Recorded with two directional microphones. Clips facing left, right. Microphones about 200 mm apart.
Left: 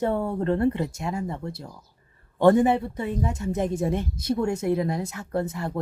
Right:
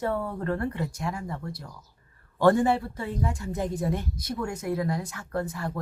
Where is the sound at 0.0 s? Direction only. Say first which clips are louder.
Left 4 dB; 25° left (ahead or behind).